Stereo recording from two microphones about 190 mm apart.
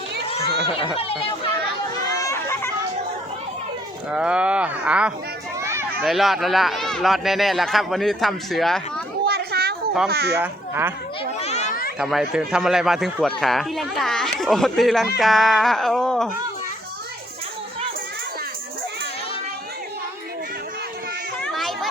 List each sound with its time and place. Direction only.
0.9 s speech: 30° left (ahead or behind)
2.0 s a sound: 15° left (ahead or behind)
4.1 s speech: 5° right (ahead or behind)
5.5 s children playing: 15° right (ahead or behind)
6.0 s speech: centre (ahead or behind)
9.2 s children playing: 55° right (ahead or behind)
10.1 s speech: 60° right (ahead or behind)
10.3 s speech: 10° right (ahead or behind)
11.3 s children playing: 35° left (ahead or behind)
11.9 s speech: centre (ahead or behind)
21.4 s a sound: centre (ahead or behind)